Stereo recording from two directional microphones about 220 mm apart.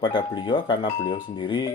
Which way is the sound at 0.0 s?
20° left (ahead or behind).